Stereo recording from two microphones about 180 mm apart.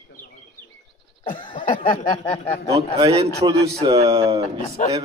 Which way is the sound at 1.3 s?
30° left (ahead or behind).